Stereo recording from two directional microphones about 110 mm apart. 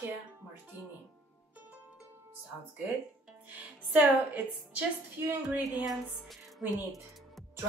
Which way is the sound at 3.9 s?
15° right (ahead or behind).